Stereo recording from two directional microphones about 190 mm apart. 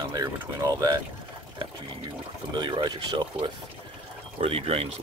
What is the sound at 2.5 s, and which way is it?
Speech, 25° right (ahead or behind).